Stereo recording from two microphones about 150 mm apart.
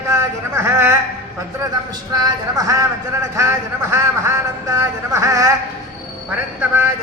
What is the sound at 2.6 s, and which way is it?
Speech, 20° right (ahead or behind).